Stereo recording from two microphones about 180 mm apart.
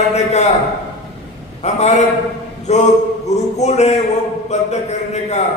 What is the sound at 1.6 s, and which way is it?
A man's voice, 40° left (ahead or behind).